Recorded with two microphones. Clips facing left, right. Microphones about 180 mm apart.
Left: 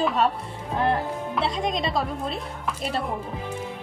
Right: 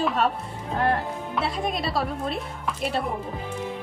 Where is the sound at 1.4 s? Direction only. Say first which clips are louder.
Left 1 dB; 5° right (ahead or behind).